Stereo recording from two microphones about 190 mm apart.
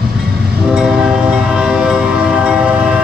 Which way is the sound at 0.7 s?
5° right (ahead or behind).